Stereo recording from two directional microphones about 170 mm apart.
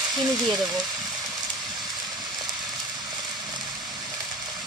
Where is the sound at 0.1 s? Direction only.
25° right (ahead or behind).